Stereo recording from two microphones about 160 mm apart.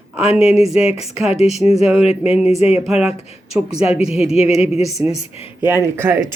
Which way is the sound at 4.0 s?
40° left (ahead or behind).